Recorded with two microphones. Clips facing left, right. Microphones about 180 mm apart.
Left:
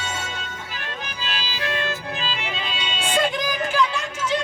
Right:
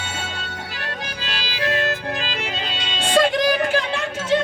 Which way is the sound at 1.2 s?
75° right (ahead or behind).